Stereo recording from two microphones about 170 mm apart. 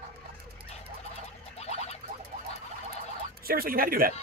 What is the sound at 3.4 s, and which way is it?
Speech, 60° right (ahead or behind).